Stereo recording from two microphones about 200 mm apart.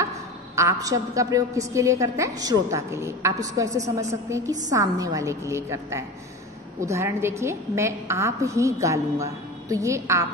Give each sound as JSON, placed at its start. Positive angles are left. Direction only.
{"t": 0.6, "sound": "a woman's voice", "side_deg": -15}